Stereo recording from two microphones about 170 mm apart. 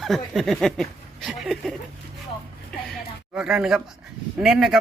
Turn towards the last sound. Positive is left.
turn(degrees=0)  # may be behind; listen again after turning